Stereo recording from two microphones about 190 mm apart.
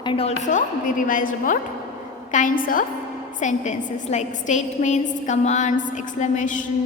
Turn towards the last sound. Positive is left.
turn(degrees=40)  # may be behind; listen again after turning